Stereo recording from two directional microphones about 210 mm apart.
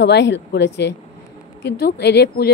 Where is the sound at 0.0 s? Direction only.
55° left (ahead or behind).